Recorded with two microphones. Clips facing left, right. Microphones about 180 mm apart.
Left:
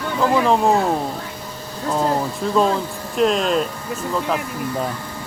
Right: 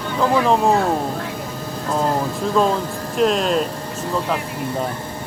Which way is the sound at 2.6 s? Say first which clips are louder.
Even; centre (ahead or behind).